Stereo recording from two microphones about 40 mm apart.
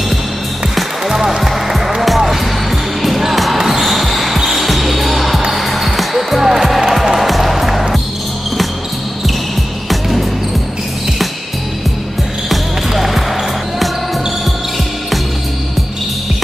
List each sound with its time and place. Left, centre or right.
0.7 s music: centre
3.0 s basketball bounce: centre
9.8 s music: centre
12.4 s basketball bounce: centre